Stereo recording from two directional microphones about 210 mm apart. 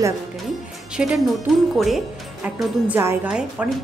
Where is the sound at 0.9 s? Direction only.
Centre (ahead or behind).